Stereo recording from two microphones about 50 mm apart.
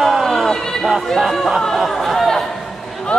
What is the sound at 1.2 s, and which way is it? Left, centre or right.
Chatter, centre.